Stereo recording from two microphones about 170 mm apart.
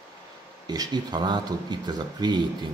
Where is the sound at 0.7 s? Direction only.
25° right (ahead or behind).